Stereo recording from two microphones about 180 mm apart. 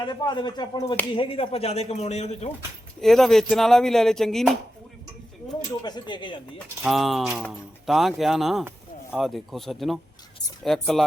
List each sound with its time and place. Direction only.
0.0 s a man's voice: 25° left (ahead or behind)
3.0 s speech: centre (ahead or behind)
5.8 s speech: 25° left (ahead or behind)
6.8 s speech: centre (ahead or behind)